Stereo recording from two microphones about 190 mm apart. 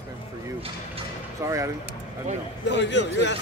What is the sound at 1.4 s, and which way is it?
Speech, 15° right (ahead or behind).